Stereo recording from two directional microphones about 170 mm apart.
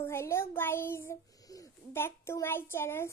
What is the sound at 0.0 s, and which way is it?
A child's voice, 15° left (ahead or behind).